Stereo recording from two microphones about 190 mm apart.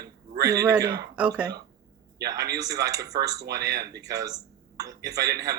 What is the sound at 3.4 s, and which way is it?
Speech, 60° right (ahead or behind).